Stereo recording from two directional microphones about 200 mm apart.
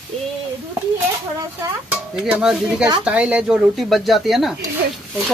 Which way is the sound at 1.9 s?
5° right (ahead or behind).